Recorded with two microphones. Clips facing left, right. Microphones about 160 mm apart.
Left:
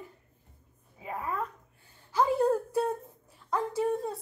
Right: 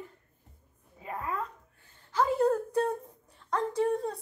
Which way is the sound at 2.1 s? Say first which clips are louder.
Even; 10° left (ahead or behind).